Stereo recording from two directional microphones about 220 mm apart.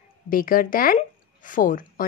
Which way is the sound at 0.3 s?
40° left (ahead or behind).